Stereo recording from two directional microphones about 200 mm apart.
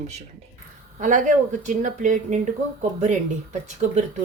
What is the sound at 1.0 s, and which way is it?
Speech, 40° right (ahead or behind).